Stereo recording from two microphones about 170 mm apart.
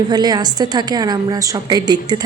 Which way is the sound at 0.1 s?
25° right (ahead or behind).